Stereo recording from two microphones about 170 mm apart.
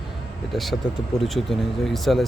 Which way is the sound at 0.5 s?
Centre (ahead or behind).